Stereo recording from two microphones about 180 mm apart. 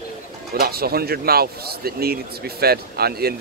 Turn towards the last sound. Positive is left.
turn(degrees=-60)  # may be behind; listen again after turning